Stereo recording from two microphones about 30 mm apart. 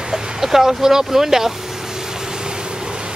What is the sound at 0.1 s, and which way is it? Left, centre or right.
Speech, centre.